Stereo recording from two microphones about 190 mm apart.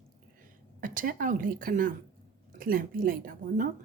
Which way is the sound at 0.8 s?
45° right (ahead or behind).